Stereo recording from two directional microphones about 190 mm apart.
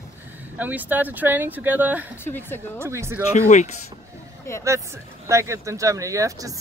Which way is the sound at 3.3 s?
40° left (ahead or behind).